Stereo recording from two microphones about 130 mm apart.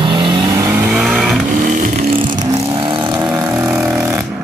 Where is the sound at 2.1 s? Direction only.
40° right (ahead or behind).